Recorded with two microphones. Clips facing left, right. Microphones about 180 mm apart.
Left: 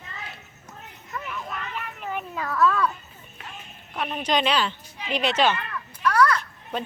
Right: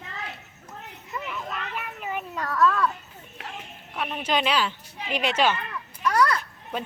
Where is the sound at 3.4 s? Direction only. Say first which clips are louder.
Right 3 dB; 80° right.